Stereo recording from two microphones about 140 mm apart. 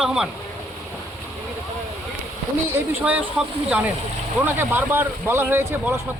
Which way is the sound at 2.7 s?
15° right (ahead or behind).